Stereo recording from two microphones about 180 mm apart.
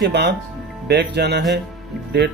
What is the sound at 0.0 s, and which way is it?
Speech, 70° right (ahead or behind).